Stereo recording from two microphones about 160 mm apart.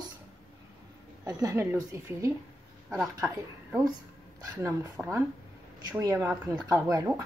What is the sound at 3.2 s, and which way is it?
A woman's voice, 15° right (ahead or behind).